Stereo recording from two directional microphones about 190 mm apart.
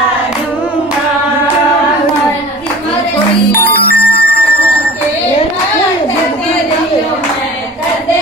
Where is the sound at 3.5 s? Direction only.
55° left (ahead or behind).